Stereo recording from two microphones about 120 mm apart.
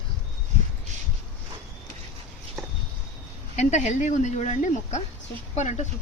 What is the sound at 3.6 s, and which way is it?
Speech, 75° left (ahead or behind).